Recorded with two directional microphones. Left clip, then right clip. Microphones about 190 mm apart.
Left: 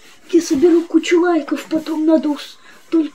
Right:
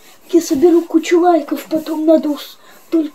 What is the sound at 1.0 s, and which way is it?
Speech, 25° left (ahead or behind).